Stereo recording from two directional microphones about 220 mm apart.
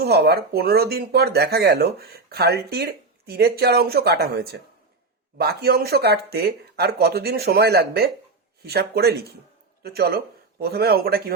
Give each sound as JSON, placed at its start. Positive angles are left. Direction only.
{"t": 0.0, "sound": "speech", "side_deg": -45}